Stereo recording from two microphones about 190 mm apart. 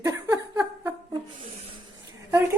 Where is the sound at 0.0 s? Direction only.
15° right (ahead or behind).